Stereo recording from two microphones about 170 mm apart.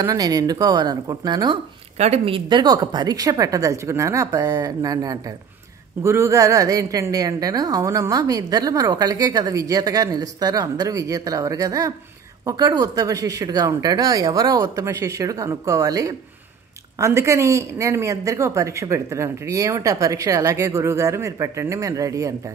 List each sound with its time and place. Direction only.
0.0 s a woman's voice: 20° right (ahead or behind)
2.0 s a woman's voice: 40° right (ahead or behind); by 22.3 s 20° right (ahead or behind)